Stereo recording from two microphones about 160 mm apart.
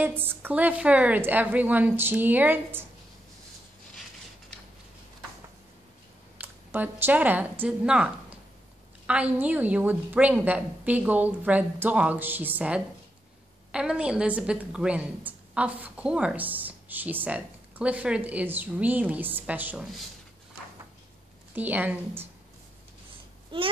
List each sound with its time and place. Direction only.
0.0 s a woman's voice: 15° right (ahead or behind)
6.3 s a woman's voice: 10° right (ahead or behind)
21.5 s a woman's voice: 10° right (ahead or behind)
23.5 s speech: 35° right (ahead or behind)